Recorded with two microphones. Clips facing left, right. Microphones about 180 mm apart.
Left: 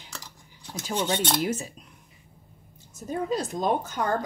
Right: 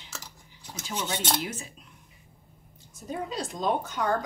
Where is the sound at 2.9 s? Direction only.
50° left (ahead or behind).